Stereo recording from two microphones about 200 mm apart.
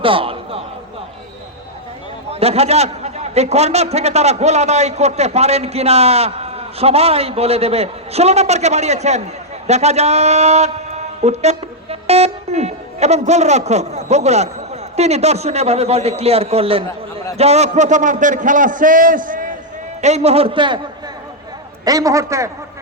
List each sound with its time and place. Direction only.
0.0 s a sound: 25° right (ahead or behind)
2.3 s a man's voice: 30° right (ahead or behind)
21.8 s a man's voice: 15° right (ahead or behind)